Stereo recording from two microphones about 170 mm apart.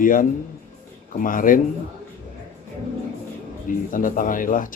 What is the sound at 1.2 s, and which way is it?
Speech, 55° left (ahead or behind).